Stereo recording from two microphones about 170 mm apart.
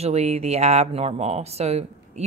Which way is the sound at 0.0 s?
40° right (ahead or behind).